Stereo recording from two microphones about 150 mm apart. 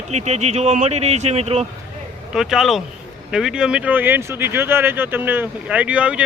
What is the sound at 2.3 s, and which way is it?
Speech, 5° right (ahead or behind).